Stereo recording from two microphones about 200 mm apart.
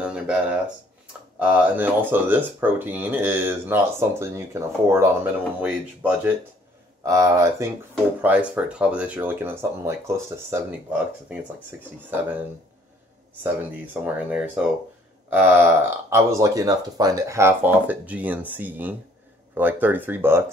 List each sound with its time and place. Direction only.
0.0 s speech: 5° right (ahead or behind)
13.4 s speech: 10° right (ahead or behind)